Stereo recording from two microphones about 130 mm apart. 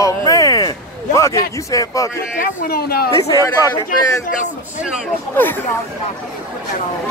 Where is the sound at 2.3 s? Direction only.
90° left.